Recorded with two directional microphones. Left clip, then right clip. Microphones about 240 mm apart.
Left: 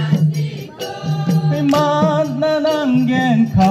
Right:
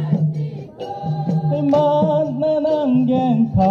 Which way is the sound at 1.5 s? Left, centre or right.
Left.